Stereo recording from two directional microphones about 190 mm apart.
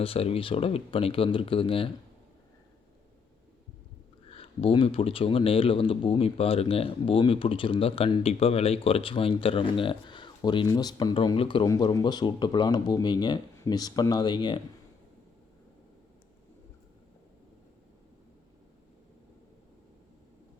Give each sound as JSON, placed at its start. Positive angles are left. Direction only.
{"t": 0.0, "sound": "speech", "side_deg": 30}
{"t": 4.3, "sound": "speech", "side_deg": 30}